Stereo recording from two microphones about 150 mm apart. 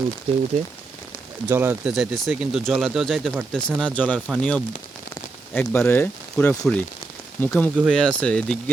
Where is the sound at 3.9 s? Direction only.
10° left (ahead or behind).